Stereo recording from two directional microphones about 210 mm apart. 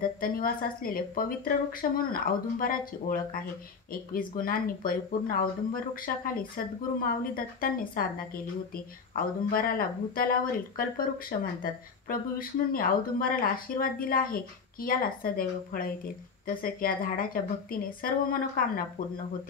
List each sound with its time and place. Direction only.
0.2 s a woman's voice: 45° left (ahead or behind)